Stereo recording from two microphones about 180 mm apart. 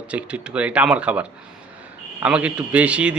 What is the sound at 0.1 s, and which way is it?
Speech, 5° right (ahead or behind).